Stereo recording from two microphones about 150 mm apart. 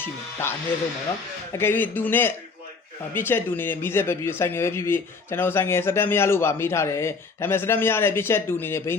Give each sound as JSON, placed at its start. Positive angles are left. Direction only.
{"t": 0.0, "sound": "speech", "side_deg": 15}
{"t": 1.5, "sound": "speech", "side_deg": 15}